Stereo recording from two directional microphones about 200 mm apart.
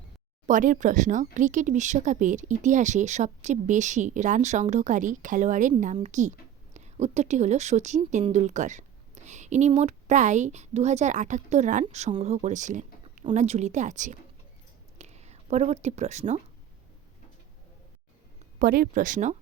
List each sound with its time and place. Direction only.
0.4 s speech: 40° right (ahead or behind)
14.9 s a sound: 35° right (ahead or behind)
18.6 s speech: 45° right (ahead or behind)